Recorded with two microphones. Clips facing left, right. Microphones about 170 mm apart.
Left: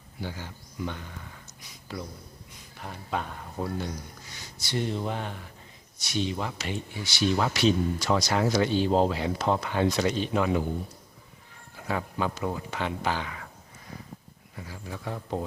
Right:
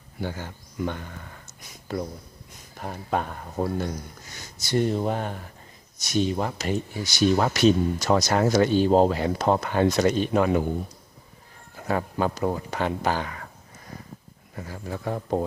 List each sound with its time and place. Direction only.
0.2 s speech: 50° right (ahead or behind)
11.8 s speech: 45° right (ahead or behind)
14.5 s speech: 50° right (ahead or behind)